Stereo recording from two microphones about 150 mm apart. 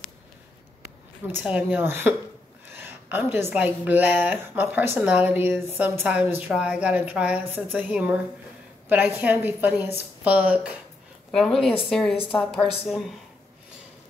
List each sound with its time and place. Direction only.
1.4 s a woman's voice: 10° right (ahead or behind)
11.3 s a woman's voice: 5° left (ahead or behind)